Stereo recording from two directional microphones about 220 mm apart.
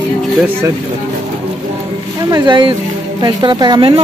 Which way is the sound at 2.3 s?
20° right (ahead or behind).